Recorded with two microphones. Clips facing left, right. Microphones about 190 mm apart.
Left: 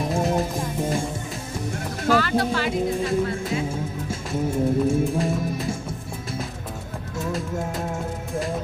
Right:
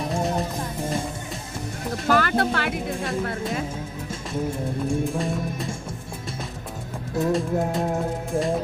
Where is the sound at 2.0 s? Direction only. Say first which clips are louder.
Left 1 dB; 50° right (ahead or behind).